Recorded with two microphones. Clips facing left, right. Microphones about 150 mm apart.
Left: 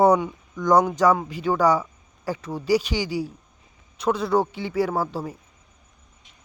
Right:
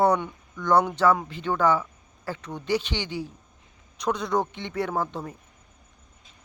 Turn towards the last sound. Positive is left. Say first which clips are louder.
# left 3 dB
turn(degrees=5)  # may be behind; listen again after turning